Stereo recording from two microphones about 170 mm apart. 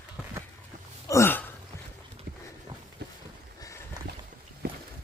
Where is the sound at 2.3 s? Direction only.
65° right (ahead or behind).